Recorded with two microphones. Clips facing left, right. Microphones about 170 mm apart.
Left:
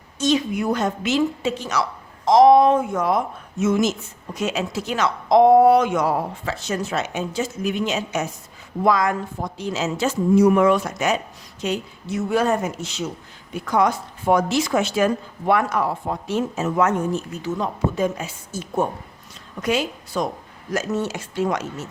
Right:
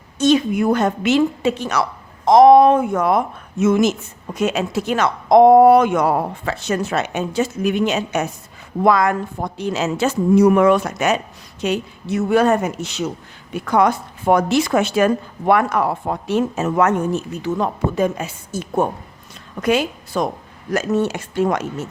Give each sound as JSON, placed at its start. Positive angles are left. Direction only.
{"t": 0.2, "sound": "a woman's voice", "side_deg": -60}